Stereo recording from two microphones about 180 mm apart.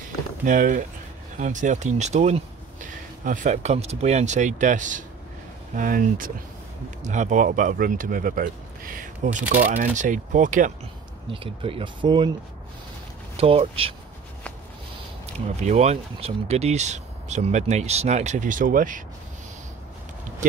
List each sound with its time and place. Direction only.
0.5 s speech: 45° right (ahead or behind)
11.3 s speech: 30° right (ahead or behind)
13.4 s speech: 30° right (ahead or behind)
15.4 s speech: 40° right (ahead or behind)